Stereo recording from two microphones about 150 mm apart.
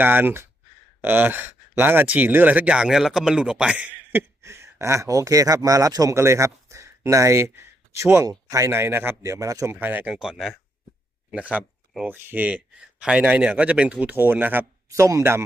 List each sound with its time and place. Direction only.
0.0 s speech: 15° right (ahead or behind)